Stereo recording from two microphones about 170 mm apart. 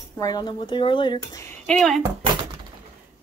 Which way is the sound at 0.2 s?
25° left (ahead or behind).